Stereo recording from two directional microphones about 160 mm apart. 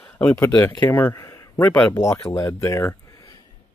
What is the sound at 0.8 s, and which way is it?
Speech, 15° left (ahead or behind).